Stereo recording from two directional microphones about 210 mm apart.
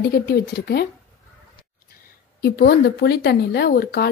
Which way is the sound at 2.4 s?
50° left (ahead or behind).